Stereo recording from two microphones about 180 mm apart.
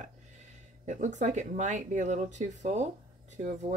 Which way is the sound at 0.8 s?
45° right (ahead or behind).